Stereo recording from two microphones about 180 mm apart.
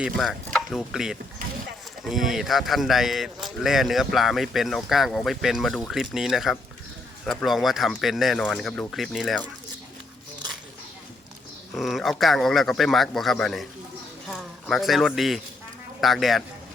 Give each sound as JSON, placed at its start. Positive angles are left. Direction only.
{"t": 0.0, "sound": "speech", "side_deg": 0}
{"t": 11.7, "sound": "speech", "side_deg": 0}